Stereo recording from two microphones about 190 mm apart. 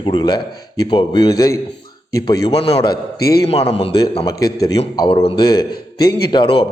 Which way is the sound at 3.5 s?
30° left (ahead or behind).